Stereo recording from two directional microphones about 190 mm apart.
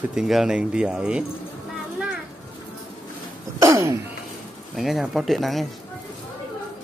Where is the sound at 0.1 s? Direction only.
Centre (ahead or behind).